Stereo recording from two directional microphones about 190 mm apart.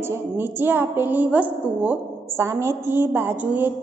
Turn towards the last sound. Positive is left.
turn(degrees=-10)  # may be behind; listen again after turning